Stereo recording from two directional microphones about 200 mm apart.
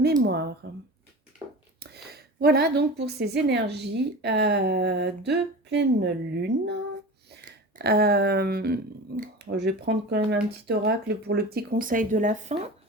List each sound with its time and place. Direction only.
0.2 s a woman's voice: 55° right (ahead or behind)
1.8 s a woman's voice: 55° right (ahead or behind)
7.8 s speech: 50° right (ahead or behind); by 12.7 s 35° right (ahead or behind)